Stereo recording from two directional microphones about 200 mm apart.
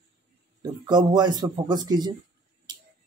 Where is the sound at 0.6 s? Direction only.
20° right (ahead or behind).